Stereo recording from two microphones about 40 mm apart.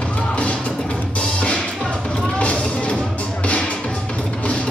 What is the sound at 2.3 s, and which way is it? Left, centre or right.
Music, left.